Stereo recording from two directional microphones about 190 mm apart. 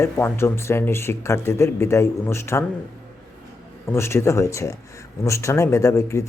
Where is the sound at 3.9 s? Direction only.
15° left (ahead or behind).